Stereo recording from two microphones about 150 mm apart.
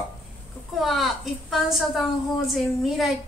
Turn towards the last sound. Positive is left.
turn(degrees=0)  # may be behind; listen again after turning